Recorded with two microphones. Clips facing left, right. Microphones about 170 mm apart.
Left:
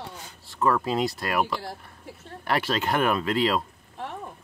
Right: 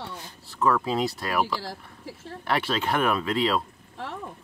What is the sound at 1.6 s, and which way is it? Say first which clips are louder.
Speech: even; 90° right.